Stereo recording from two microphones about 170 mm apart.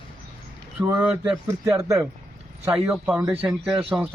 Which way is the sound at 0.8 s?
10° right (ahead or behind).